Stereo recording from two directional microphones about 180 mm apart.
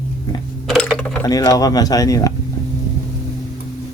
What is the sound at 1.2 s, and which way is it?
Speech, 20° left (ahead or behind).